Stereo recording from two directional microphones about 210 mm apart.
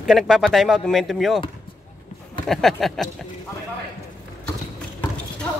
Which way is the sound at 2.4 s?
Centre (ahead or behind).